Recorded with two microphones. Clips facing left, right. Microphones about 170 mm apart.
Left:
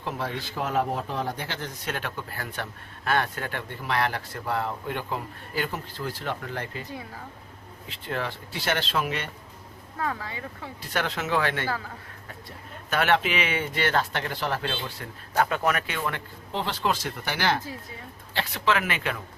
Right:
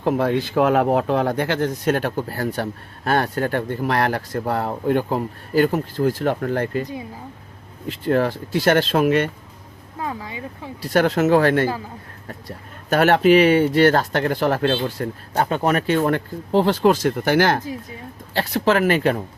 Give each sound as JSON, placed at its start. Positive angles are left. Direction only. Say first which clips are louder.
{"t": 0.0, "sound": "speech", "louder": "right 12 dB", "side_deg": -55}
{"t": 7.9, "sound": "speech", "louder": "right 12 dB", "side_deg": -45}
{"t": 10.0, "sound": "speech", "louder": "right 3 dB", "side_deg": -15}
{"t": 10.8, "sound": "speech", "louder": "right 12 dB", "side_deg": -40}